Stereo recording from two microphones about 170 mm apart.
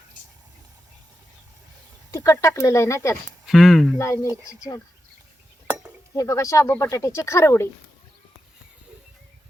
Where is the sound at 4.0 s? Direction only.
15° left (ahead or behind).